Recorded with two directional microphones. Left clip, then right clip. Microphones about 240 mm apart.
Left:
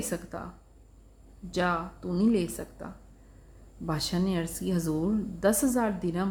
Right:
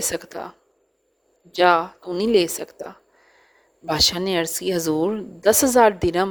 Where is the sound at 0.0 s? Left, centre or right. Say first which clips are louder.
Right 8 dB; right.